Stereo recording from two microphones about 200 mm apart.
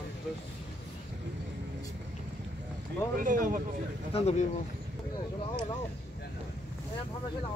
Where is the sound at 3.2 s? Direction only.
40° right (ahead or behind).